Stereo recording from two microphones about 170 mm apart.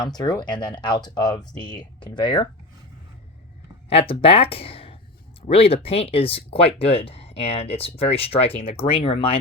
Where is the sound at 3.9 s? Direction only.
35° left (ahead or behind).